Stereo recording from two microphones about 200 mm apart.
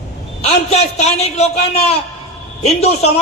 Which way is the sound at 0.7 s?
35° left (ahead or behind).